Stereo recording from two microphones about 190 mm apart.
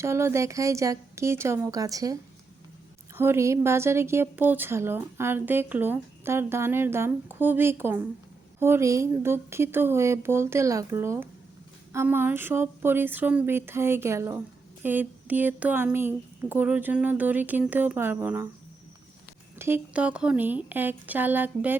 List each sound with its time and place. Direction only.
0.0 s speech: 15° right (ahead or behind)
3.2 s speech: 15° right (ahead or behind)
19.5 s speech: 10° right (ahead or behind)